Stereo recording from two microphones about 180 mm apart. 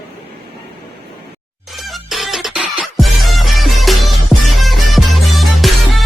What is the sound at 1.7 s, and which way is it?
Music, centre (ahead or behind).